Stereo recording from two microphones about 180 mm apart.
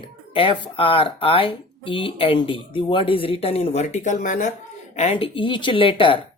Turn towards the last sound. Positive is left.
turn(degrees=30)  # may be behind; listen again after turning